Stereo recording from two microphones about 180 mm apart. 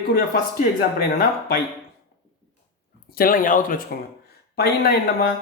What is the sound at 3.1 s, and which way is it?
Speech, 50° left (ahead or behind).